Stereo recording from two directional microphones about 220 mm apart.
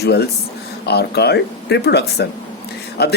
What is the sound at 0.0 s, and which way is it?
Speech, 50° left (ahead or behind).